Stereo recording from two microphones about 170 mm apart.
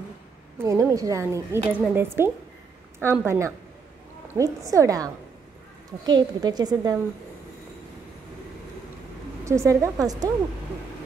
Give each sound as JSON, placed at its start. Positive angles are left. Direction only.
{"t": 0.7, "sound": "a woman's voice", "side_deg": -15}
{"t": 9.4, "sound": "a woman's voice", "side_deg": -15}